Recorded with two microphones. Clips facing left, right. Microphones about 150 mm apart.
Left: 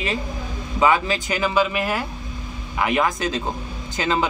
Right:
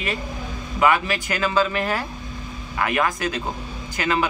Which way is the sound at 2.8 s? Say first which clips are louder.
Left 2 dB; 20° left (ahead or behind).